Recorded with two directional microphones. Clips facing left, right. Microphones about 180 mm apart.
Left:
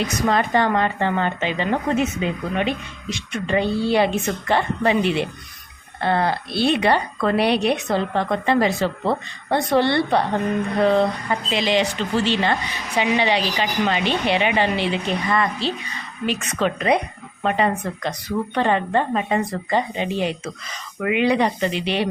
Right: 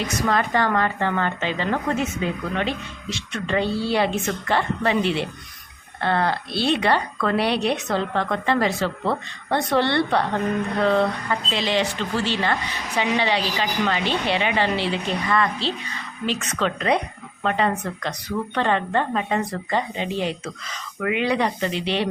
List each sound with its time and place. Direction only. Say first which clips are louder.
0.3 s a woman's voice: left 2 dB; 20° left (ahead or behind)